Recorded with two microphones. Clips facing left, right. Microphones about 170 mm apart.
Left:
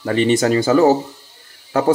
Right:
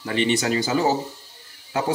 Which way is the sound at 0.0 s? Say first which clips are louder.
Left 7 dB; 45° left (ahead or behind).